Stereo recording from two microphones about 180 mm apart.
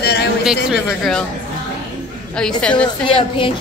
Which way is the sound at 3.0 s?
30° left (ahead or behind).